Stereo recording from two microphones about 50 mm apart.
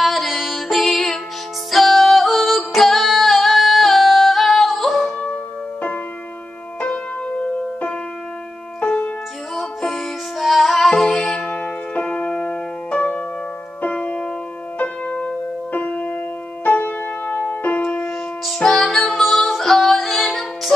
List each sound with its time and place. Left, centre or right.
0.0 s music: centre
5.2 s music: left
9.6 s music: centre
11.4 s music: left
18.4 s music: centre